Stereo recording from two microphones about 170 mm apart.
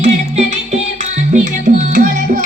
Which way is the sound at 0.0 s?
45° right (ahead or behind).